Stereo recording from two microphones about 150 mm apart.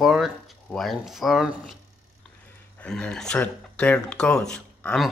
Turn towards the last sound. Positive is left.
turn(degrees=5)  # may be behind; listen again after turning